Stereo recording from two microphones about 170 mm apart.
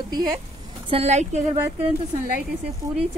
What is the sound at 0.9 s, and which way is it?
Speech, 40° right (ahead or behind).